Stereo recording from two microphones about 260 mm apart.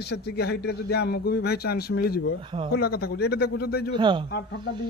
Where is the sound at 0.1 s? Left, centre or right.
Left.